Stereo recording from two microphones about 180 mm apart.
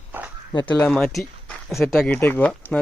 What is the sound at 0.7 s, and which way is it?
Speech, 10° left (ahead or behind).